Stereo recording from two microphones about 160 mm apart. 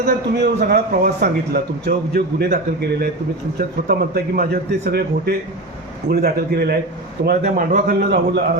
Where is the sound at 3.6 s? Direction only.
70° right (ahead or behind).